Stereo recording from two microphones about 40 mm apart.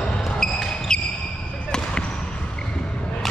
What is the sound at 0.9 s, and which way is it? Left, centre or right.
Basketball bounce, centre.